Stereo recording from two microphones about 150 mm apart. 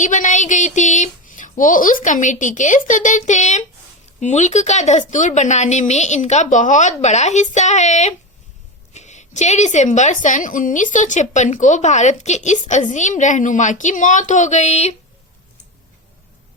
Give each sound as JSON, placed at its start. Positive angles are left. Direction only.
{"t": 0.0, "sound": "a woman's voice", "side_deg": 55}